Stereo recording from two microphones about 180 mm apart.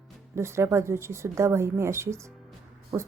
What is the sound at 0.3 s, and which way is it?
Speech, 15° right (ahead or behind).